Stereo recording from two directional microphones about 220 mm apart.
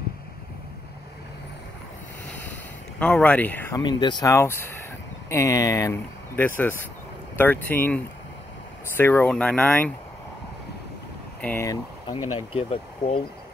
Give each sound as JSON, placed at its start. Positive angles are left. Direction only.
{"t": 3.0, "sound": "speech", "side_deg": 5}
{"t": 11.4, "sound": "speech", "side_deg": 10}